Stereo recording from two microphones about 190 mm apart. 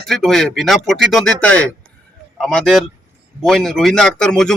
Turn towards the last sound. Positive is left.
turn(degrees=5)  # may be behind; listen again after turning